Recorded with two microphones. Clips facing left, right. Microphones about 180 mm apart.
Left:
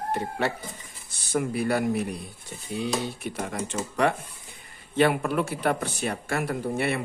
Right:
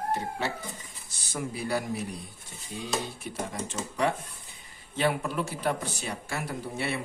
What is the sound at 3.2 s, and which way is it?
Speech, 65° left (ahead or behind).